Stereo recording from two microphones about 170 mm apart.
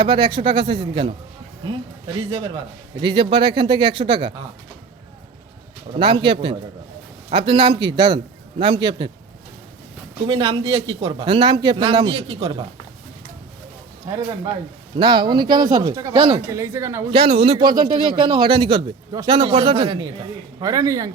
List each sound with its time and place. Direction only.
0.0 s a man's voice: 25° right (ahead or behind)
3.0 s a man's voice: 30° right (ahead or behind)
5.9 s a man's voice: 30° right (ahead or behind)
10.2 s a man's voice: 30° right (ahead or behind)
14.9 s a man's voice: 25° right (ahead or behind)
16.1 s a man's voice: 30° right (ahead or behind)
16.5 s speech: 15° right (ahead or behind)
17.1 s a man's voice: 30° right (ahead or behind)